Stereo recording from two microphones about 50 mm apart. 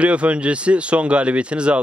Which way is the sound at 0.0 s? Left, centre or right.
Right.